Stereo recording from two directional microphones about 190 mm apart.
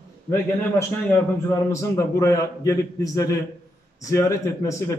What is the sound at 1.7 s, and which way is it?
A man's voice, 15° left (ahead or behind).